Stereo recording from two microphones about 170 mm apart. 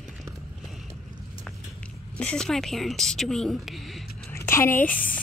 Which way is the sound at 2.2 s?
5° left (ahead or behind).